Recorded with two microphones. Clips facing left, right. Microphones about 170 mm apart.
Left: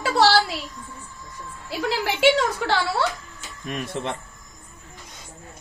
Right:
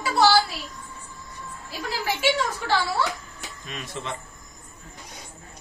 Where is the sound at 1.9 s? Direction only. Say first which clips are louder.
Left 5 dB; 80° left.